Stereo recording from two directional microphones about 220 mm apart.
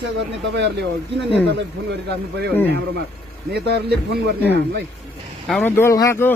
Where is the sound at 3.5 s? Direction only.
50° right (ahead or behind).